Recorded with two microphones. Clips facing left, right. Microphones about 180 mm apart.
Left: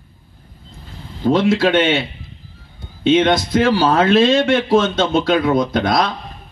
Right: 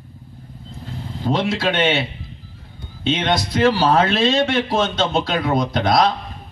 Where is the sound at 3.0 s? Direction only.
50° left (ahead or behind).